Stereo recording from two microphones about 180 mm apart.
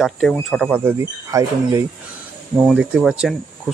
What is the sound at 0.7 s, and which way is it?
Speech, 15° right (ahead or behind).